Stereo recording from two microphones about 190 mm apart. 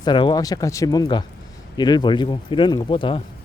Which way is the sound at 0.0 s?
25° left (ahead or behind).